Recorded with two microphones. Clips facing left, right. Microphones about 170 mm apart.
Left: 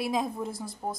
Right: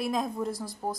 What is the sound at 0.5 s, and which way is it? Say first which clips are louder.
Speech: right 1 dB; 25° left (ahead or behind).